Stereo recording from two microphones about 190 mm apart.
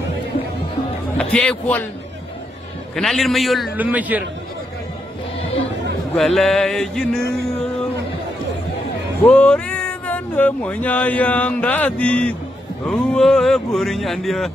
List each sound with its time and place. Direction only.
1.1 s speech: 5° left (ahead or behind)
3.0 s speech: centre (ahead or behind)
6.1 s speech: centre (ahead or behind)
9.2 s speech: 5° left (ahead or behind)